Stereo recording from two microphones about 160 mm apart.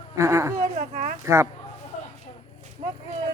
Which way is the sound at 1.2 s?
15° right (ahead or behind).